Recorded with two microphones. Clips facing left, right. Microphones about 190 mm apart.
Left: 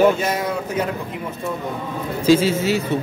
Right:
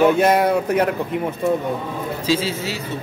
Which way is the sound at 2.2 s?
50° left (ahead or behind).